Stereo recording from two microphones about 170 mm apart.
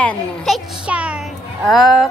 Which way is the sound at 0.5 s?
Centre (ahead or behind).